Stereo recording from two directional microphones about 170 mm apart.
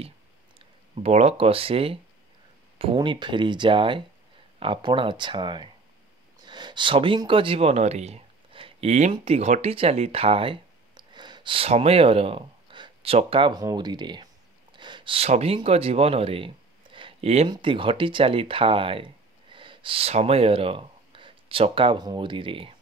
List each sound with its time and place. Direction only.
0.6 s speech: 35° right (ahead or behind)